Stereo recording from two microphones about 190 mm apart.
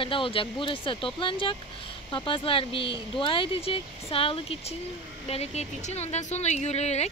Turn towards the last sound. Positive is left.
turn(degrees=35)  # may be behind; listen again after turning